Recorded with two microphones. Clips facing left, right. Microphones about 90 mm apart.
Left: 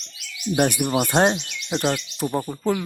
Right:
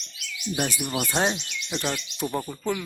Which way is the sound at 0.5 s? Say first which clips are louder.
Left 8 dB; 60° left (ahead or behind).